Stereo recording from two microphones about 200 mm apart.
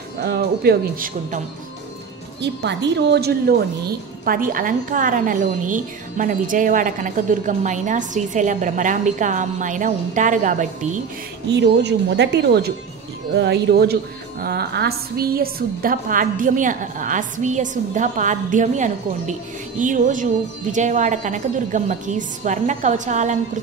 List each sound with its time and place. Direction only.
0.2 s speech: 55° right (ahead or behind)
2.4 s a woman's voice: 60° right (ahead or behind); by 11.0 s 40° right (ahead or behind)
11.6 s a woman's voice: 60° right (ahead or behind); by 23.3 s 35° right (ahead or behind)